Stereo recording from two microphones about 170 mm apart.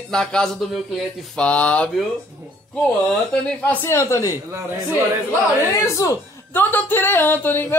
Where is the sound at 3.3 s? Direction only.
10° left (ahead or behind).